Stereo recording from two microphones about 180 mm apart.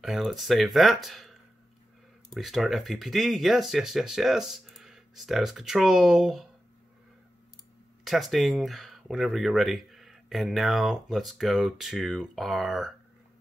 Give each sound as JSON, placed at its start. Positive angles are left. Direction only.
{"t": 0.0, "sound": "speech", "side_deg": 0}
{"t": 2.3, "sound": "speech", "side_deg": 0}
{"t": 8.0, "sound": "speech", "side_deg": 0}